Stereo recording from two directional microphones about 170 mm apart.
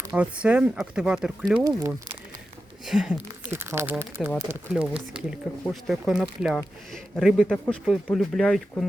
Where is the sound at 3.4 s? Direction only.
15° right (ahead or behind).